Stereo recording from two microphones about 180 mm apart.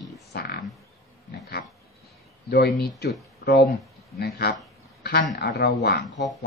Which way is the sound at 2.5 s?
65° left (ahead or behind).